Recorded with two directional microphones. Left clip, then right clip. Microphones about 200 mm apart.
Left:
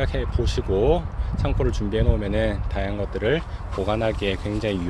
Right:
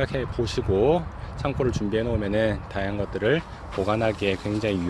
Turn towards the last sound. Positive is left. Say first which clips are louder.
# even
turn(degrees=-5)  # may be behind; listen again after turning